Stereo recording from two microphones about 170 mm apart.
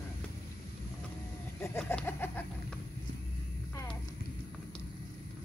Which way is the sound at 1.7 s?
15° left (ahead or behind).